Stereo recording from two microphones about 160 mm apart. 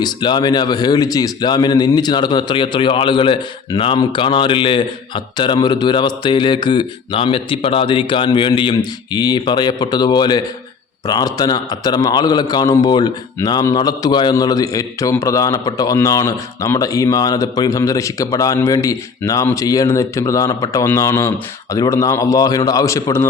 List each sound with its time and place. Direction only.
0.0 s a man's voice: 25° left (ahead or behind)